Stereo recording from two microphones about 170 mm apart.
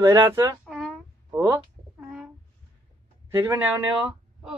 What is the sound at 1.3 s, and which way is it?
Speech, 15° right (ahead or behind).